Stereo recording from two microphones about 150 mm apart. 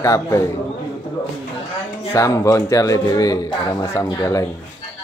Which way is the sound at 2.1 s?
20° left (ahead or behind).